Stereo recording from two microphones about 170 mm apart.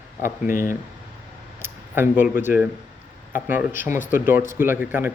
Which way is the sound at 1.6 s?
10° right (ahead or behind).